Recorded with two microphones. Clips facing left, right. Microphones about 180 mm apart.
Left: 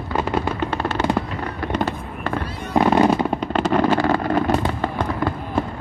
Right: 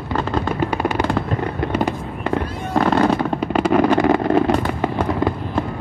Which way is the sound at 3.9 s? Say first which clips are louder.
Right 4 dB; 20° right (ahead or behind).